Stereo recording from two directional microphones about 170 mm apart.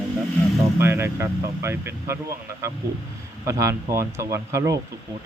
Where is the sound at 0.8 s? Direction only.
15° right (ahead or behind).